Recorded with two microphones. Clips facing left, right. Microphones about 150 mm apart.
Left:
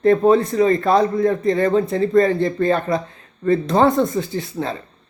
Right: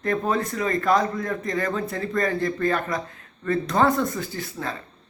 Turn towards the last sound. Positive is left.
turn(degrees=25)  # may be behind; listen again after turning